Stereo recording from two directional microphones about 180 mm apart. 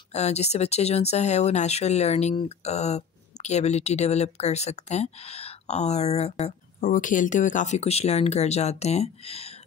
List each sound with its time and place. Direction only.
0.1 s speech: 35° left (ahead or behind)
6.8 s speech: 50° left (ahead or behind)